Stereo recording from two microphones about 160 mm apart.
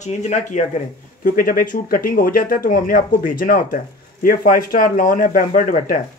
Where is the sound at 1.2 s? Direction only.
60° left (ahead or behind).